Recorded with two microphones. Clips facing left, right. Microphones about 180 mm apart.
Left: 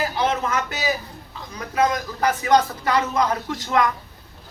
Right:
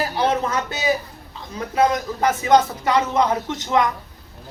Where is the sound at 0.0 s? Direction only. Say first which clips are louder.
Right 2 dB; 30° right (ahead or behind).